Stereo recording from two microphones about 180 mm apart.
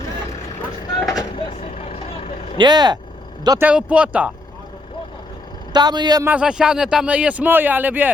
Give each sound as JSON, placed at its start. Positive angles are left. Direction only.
{"t": 1.0, "sound": "vehicle", "side_deg": 20}
{"t": 1.4, "sound": "vehicle", "side_deg": 30}
{"t": 2.6, "sound": "a man's voice", "side_deg": -25}
{"t": 3.7, "sound": "speech", "side_deg": -5}
{"t": 5.7, "sound": "a man's voice", "side_deg": -25}
{"t": 6.2, "sound": "speech", "side_deg": -5}